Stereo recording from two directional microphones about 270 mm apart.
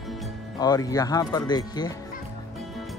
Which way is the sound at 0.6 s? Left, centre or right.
Centre.